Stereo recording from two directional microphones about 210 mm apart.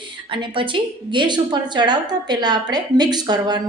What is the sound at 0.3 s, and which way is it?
A woman's voice, 25° right (ahead or behind).